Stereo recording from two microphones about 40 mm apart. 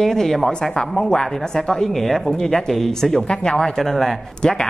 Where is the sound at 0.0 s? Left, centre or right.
Centre.